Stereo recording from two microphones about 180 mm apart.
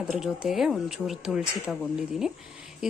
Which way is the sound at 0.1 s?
Centre (ahead or behind).